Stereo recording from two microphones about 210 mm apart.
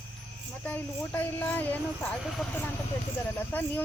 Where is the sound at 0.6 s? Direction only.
10° left (ahead or behind).